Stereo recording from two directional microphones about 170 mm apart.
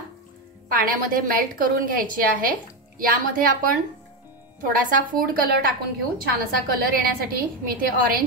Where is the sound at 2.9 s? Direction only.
55° right (ahead or behind).